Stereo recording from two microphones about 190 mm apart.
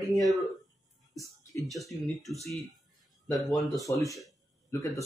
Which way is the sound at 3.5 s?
Centre (ahead or behind).